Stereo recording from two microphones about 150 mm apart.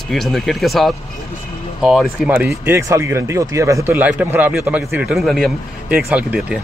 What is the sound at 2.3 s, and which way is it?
A man's voice, 15° right (ahead or behind).